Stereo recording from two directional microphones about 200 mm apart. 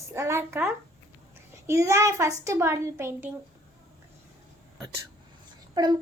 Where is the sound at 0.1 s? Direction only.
15° right (ahead or behind).